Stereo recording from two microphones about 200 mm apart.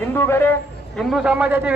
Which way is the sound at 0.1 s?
10° left (ahead or behind).